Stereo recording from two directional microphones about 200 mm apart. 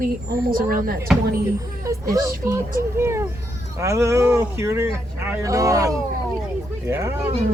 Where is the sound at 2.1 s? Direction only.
15° right (ahead or behind).